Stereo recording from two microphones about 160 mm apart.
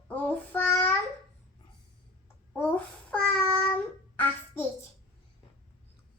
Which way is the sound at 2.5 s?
10° left (ahead or behind).